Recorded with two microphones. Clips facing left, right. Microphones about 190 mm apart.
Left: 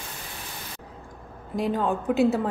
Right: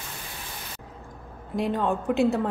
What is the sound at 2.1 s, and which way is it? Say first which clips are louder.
Speech: left 1 dB; centre (ahead or behind).